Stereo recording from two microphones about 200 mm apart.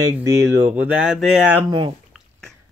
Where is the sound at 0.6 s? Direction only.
10° right (ahead or behind).